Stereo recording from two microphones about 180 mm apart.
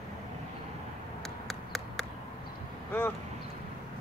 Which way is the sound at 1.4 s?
Centre (ahead or behind).